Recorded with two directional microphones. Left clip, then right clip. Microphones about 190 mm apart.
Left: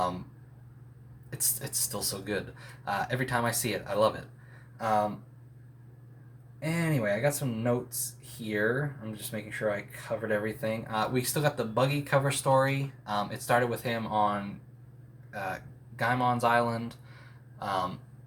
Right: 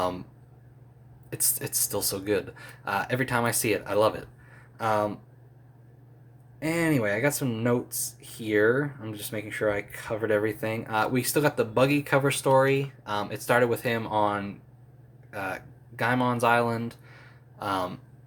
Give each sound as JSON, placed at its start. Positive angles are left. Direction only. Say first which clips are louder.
{"t": 1.3, "sound": "speech", "louder": "right 4 dB", "side_deg": -45}
{"t": 6.6, "sound": "speech", "louder": "right 6 dB", "side_deg": -45}